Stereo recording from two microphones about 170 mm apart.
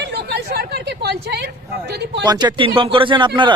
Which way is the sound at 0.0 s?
85° right.